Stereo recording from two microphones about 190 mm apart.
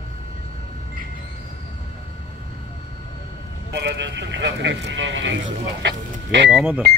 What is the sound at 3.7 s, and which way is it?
Speech, 65° right (ahead or behind).